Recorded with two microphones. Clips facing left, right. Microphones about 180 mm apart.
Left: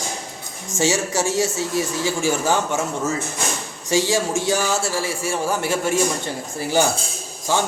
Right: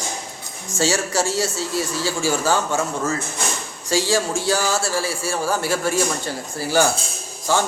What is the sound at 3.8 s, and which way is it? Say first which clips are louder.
A man's voice: left 1 dB; 20° left (ahead or behind).